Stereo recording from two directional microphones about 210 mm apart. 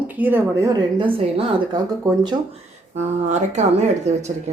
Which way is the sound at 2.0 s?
15° right (ahead or behind).